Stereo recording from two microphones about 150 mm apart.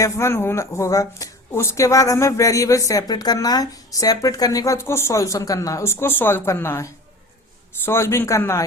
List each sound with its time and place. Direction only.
0.0 s a man's voice: 20° left (ahead or behind)